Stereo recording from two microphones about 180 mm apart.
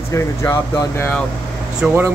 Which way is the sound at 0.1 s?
15° left (ahead or behind).